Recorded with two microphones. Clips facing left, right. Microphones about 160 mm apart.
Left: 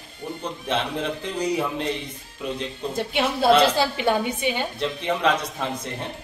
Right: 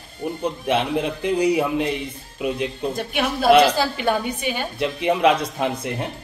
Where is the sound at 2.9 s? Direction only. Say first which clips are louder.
Even; 25° left (ahead or behind).